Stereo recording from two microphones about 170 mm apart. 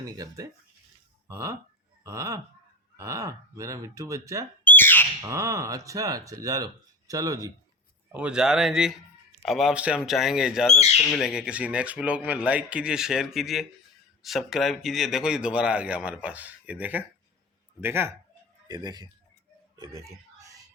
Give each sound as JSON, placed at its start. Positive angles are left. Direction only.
{"t": 0.0, "sound": "speech", "side_deg": -20}
{"t": 4.6, "sound": "a sound", "side_deg": 10}
{"t": 5.2, "sound": "speech", "side_deg": -20}
{"t": 8.1, "sound": "speech", "side_deg": -5}
{"t": 10.8, "sound": "speech", "side_deg": 40}
{"t": 11.1, "sound": "speech", "side_deg": -5}
{"t": 18.7, "sound": "speech", "side_deg": -25}
{"t": 19.8, "sound": "a sound", "side_deg": -15}